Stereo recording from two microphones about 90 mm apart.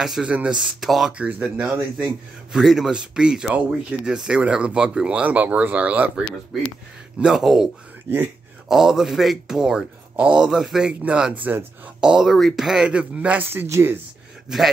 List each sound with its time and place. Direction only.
0.0 s speech: 5° right (ahead or behind)
0.3 s speech: 15° right (ahead or behind)
0.6 s speech: 5° right (ahead or behind)
1.1 s speech: 10° right (ahead or behind)
7.2 s speech: 5° right (ahead or behind)
12.0 s speech: 5° right (ahead or behind); by 13.9 s 25° right (ahead or behind)